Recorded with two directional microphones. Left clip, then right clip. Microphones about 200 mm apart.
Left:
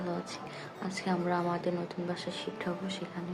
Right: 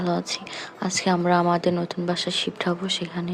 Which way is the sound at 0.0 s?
45° right (ahead or behind).